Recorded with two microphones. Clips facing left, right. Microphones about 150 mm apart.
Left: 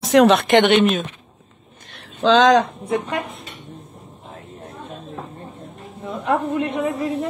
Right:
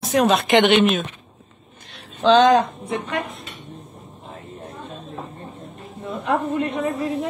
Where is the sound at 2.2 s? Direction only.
90° left.